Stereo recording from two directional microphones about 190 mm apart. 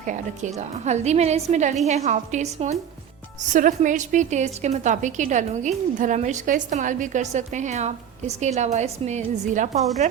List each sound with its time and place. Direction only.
0.0 s a woman's voice: 40° right (ahead or behind)